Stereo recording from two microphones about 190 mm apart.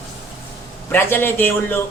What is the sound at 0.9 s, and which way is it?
Speech, 10° left (ahead or behind).